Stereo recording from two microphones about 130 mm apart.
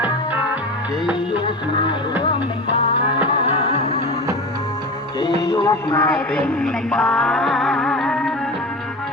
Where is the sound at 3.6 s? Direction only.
55° left (ahead or behind).